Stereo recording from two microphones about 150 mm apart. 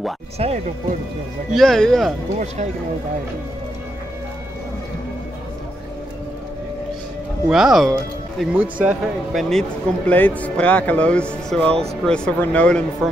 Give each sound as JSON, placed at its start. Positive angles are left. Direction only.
{"t": 0.4, "sound": "speech", "side_deg": -45}
{"t": 1.5, "sound": "speech", "side_deg": 0}
{"t": 2.3, "sound": "speech", "side_deg": -50}
{"t": 7.4, "sound": "speech", "side_deg": -5}